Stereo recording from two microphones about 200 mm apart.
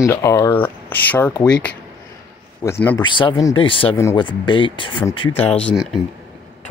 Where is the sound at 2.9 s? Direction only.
25° left (ahead or behind).